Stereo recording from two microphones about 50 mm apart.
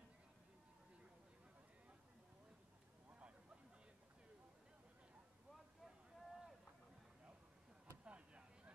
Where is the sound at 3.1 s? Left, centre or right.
Right.